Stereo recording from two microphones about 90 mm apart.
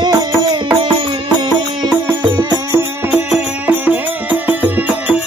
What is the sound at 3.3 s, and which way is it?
Music, 20° right (ahead or behind).